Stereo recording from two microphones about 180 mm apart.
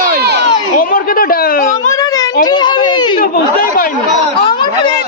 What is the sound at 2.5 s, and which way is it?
Speech, 25° left (ahead or behind).